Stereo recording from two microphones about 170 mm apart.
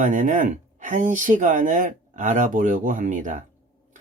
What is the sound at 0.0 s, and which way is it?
Speech, 50° right (ahead or behind).